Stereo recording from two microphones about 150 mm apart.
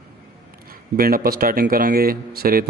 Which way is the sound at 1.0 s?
75° right (ahead or behind).